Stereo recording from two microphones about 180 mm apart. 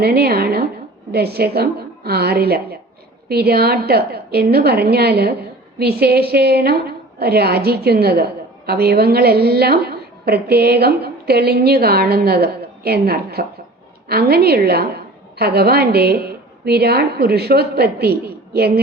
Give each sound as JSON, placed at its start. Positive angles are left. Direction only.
{"t": 0.0, "sound": "a woman's voice", "side_deg": -60}